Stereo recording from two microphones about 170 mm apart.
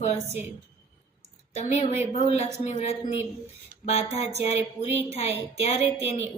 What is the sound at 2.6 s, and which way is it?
A woman's voice, 40° left (ahead or behind).